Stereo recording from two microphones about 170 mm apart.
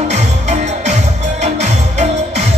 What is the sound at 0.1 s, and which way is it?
Music, 45° right (ahead or behind).